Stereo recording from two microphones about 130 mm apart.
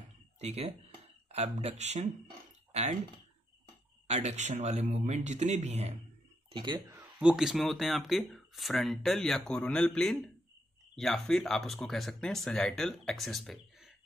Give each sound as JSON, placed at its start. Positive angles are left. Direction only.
{"t": 0.4, "sound": "speech", "side_deg": -50}
{"t": 4.1, "sound": "speech", "side_deg": -60}
{"t": 6.5, "sound": "speech", "side_deg": -35}
{"t": 6.9, "sound": "speech", "side_deg": -10}